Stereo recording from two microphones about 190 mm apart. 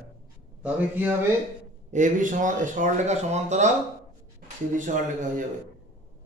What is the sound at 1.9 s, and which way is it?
Speech, 40° right (ahead or behind).